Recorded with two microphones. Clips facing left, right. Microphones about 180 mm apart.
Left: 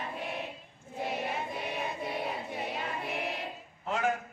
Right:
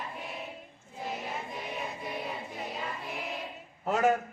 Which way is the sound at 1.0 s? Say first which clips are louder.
Left 2 dB; 65° left (ahead or behind).